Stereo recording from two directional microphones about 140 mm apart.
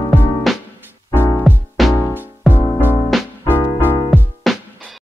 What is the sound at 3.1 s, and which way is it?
Music, centre (ahead or behind).